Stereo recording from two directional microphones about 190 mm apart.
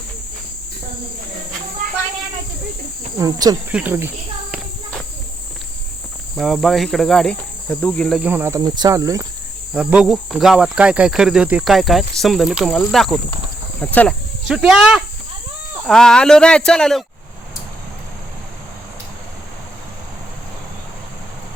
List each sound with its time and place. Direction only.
3.2 s cricket: 20° right (ahead or behind)
3.7 s speech: 10° right (ahead or behind)
6.3 s insect: centre (ahead or behind)
8.3 s speech: 10° right (ahead or behind)
9.7 s insect: 5° right (ahead or behind)
13.7 s speech: 5° left (ahead or behind)
14.4 s insect: 5° right (ahead or behind)